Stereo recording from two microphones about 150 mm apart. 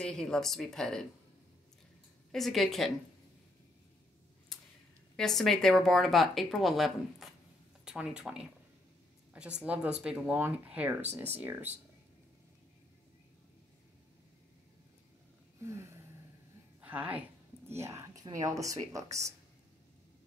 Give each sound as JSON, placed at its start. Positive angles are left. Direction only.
{"t": 0.0, "sound": "speech", "side_deg": 5}
{"t": 2.3, "sound": "speech", "side_deg": 0}
{"t": 5.1, "sound": "speech", "side_deg": 5}
{"t": 7.8, "sound": "a sound", "side_deg": -5}
{"t": 8.2, "sound": "speech", "side_deg": -5}
{"t": 15.6, "sound": "a woman's voice", "side_deg": -20}